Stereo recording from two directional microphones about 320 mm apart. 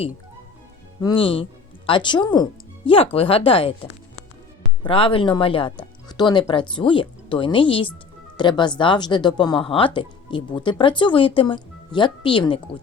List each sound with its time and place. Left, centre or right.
1.0 s speech: centre